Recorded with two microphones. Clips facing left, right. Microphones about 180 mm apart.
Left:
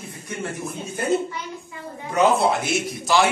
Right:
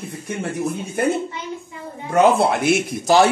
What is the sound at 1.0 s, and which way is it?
Speech, 60° right (ahead or behind).